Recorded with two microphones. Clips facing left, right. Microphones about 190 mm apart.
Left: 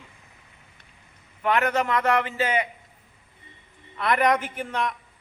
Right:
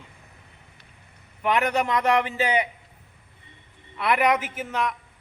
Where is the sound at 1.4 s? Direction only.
15° right (ahead or behind).